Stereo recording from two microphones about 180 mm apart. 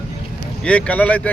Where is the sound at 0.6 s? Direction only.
5° left (ahead or behind).